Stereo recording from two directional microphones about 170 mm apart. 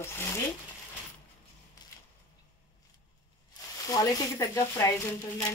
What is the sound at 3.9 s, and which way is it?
Speech, 20° left (ahead or behind).